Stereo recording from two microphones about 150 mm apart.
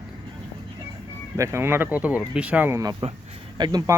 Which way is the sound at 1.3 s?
20° right (ahead or behind).